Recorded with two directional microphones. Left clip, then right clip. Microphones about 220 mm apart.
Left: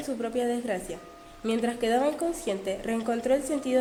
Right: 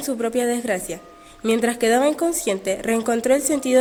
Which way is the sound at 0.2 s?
30° right (ahead or behind).